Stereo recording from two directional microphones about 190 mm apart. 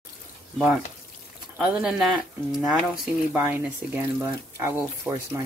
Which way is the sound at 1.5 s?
5° right (ahead or behind).